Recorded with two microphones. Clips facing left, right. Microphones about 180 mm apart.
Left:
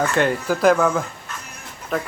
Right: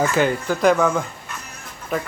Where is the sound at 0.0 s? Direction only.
Centre (ahead or behind).